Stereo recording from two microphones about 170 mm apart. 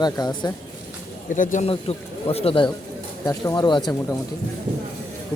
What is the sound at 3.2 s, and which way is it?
Speech, 20° left (ahead or behind).